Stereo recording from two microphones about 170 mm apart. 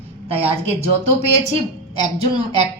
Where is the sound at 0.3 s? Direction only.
35° right (ahead or behind).